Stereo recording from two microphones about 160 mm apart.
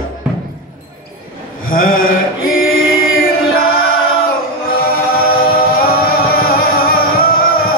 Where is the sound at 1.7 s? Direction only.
65° left (ahead or behind).